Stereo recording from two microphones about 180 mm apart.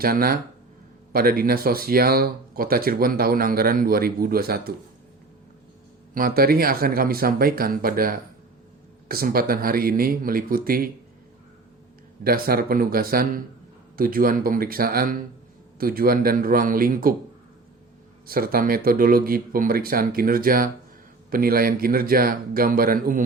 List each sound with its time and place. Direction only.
0.0 s speech: 55° right (ahead or behind)
6.1 s speech: 55° right (ahead or behind)
12.2 s speech: 55° right (ahead or behind)
18.3 s speech: 55° right (ahead or behind)